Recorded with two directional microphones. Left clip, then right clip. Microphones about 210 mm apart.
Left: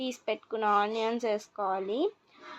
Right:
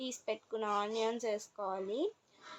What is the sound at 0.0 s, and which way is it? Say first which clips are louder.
A woman's voice: left 6 dB; 25° left (ahead or behind).